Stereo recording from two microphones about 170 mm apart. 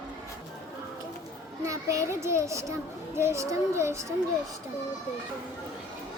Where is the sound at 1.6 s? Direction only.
20° right (ahead or behind).